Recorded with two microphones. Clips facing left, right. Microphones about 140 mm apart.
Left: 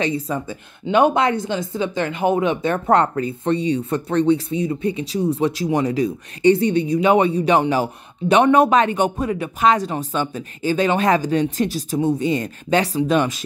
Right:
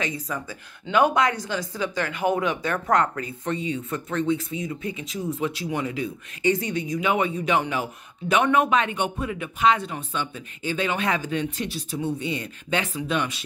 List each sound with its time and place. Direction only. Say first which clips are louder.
0.0 s speech: left 8 dB; 30° left (ahead or behind)